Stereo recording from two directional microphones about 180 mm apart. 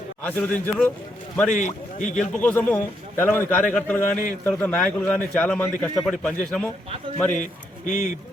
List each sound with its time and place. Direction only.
0.2 s a man's voice: 10° left (ahead or behind)
1.5 s a man's voice: 45° left (ahead or behind)
2.4 s a man's voice: 10° left (ahead or behind)
7.3 s a man's voice: 45° left (ahead or behind)